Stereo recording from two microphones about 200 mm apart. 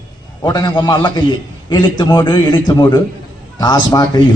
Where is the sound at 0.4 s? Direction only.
20° left (ahead or behind).